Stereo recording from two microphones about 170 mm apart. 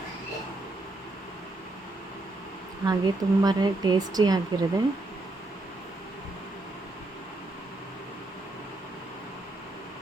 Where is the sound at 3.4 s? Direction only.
25° right (ahead or behind).